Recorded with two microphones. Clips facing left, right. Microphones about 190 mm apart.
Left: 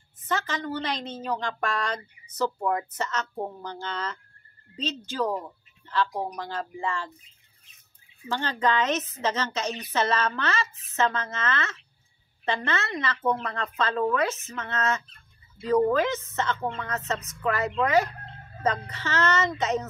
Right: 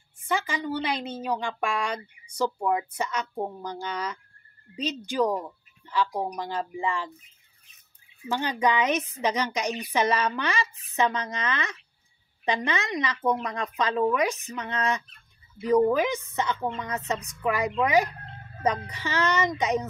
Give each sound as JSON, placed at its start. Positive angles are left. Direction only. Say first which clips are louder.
{"t": 0.2, "sound": "a woman's voice", "louder": "right 1 dB", "side_deg": -10}
{"t": 8.3, "sound": "a woman's voice", "louder": "right 1 dB", "side_deg": -15}